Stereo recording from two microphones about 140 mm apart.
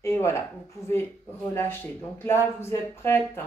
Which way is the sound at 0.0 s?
20° left (ahead or behind).